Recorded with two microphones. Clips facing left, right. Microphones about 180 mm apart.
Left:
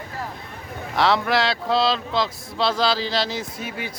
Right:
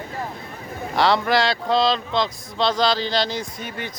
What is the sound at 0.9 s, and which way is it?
Speech, centre (ahead or behind).